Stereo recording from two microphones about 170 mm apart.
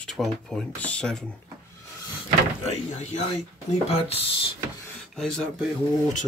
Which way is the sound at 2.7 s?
40° left (ahead or behind).